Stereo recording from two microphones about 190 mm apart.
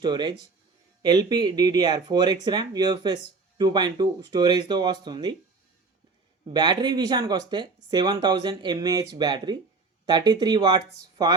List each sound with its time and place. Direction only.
0.0 s speech: 25° right (ahead or behind)
6.4 s speech: 25° right (ahead or behind)